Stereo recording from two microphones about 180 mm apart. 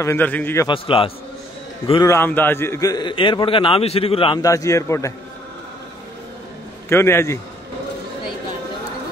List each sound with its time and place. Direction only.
0.0 s a man's voice: 10° left (ahead or behind)
0.7 s a man's voice: 30° left (ahead or behind)
2.0 s a man's voice: 10° left (ahead or behind); by 4.4 s 30° left (ahead or behind)
4.4 s a man's voice: 20° left (ahead or behind)
6.9 s a man's voice: 15° left (ahead or behind)